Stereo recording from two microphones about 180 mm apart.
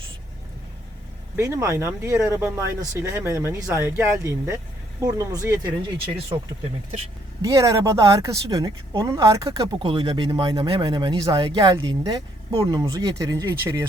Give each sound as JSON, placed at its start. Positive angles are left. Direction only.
{"t": 1.4, "sound": "speech", "side_deg": -15}